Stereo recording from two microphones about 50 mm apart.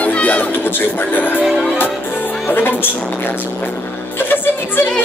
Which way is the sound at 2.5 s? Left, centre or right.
Left.